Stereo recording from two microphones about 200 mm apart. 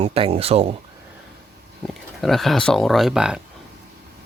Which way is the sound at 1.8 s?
5° left (ahead or behind).